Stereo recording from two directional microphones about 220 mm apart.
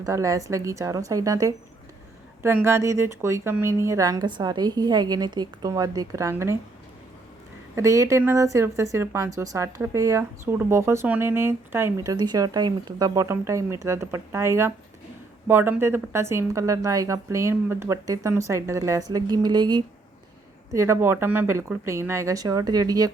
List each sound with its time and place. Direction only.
0.0 s speech: 15° right (ahead or behind)
7.8 s speech: 15° right (ahead or behind)